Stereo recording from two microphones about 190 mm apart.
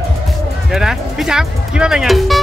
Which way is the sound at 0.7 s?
Centre (ahead or behind).